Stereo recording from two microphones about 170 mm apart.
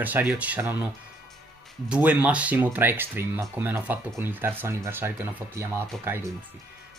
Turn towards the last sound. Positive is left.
turn(degrees=-15)  # may be behind; listen again after turning